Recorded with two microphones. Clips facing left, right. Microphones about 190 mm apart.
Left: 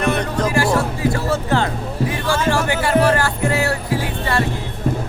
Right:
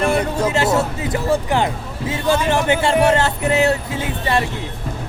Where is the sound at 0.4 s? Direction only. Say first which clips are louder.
Left 2 dB; 25° right (ahead or behind).